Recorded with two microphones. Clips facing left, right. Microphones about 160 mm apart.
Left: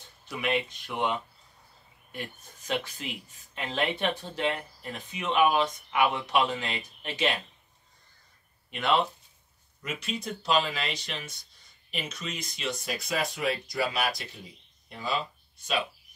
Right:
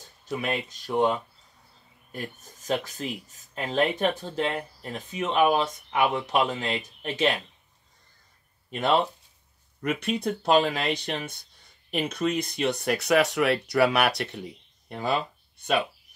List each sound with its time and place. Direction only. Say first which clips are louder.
0.4 s speech: left 3 dB; 40° right (ahead or behind)
8.6 s a sound: right 3 dB; 40° right (ahead or behind)
9.8 s speech: right 8 dB; 60° right (ahead or behind)
14.9 s speech: right 5 dB; 55° right (ahead or behind)